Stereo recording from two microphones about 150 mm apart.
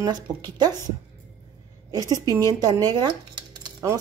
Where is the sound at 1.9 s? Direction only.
25° right (ahead or behind).